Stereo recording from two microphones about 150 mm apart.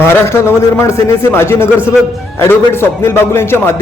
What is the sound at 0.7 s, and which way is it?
A man's voice, 15° left (ahead or behind).